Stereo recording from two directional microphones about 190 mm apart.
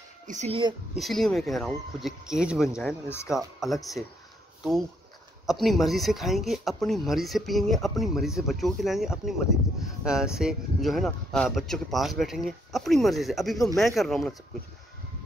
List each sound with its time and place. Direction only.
0.3 s speech: 35° right (ahead or behind)
0.9 s speech: centre (ahead or behind)
5.5 s speech: centre (ahead or behind)